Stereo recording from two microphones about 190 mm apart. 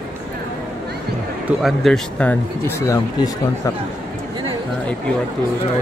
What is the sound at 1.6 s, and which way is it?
Speech, centre (ahead or behind).